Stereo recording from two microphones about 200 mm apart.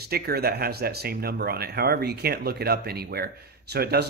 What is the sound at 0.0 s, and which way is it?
Speech, 50° right (ahead or behind).